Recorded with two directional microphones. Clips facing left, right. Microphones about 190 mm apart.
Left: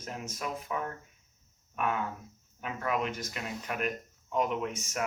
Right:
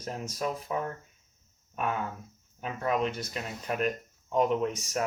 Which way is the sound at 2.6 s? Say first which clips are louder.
Right 3 dB; 30° right (ahead or behind).